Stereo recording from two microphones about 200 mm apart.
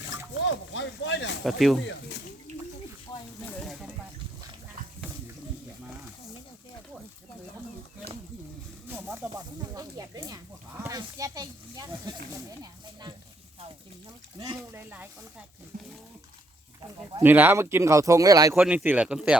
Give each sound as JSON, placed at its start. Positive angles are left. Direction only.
{"t": 0.3, "sound": "speech", "side_deg": 65}
{"t": 1.5, "sound": "speech", "side_deg": 0}
{"t": 2.5, "sound": "bathtub", "side_deg": -35}
{"t": 8.9, "sound": "snake", "side_deg": -10}
{"t": 9.7, "sound": "speech", "side_deg": -20}
{"t": 14.3, "sound": "speech", "side_deg": -20}
{"t": 15.7, "sound": "speech", "side_deg": -45}
{"t": 17.2, "sound": "speech", "side_deg": -10}
{"t": 18.6, "sound": "speech", "side_deg": -5}